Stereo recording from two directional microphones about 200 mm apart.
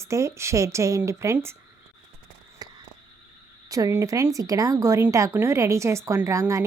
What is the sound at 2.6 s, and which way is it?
Frog, 20° right (ahead or behind).